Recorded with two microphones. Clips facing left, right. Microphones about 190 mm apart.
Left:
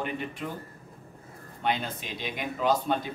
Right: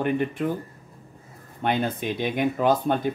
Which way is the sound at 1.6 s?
55° right (ahead or behind).